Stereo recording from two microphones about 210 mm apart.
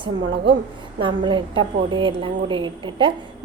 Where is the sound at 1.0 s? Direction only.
25° right (ahead or behind).